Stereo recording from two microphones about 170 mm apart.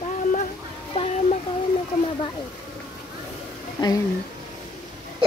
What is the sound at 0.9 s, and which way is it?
Speech, 35° left (ahead or behind).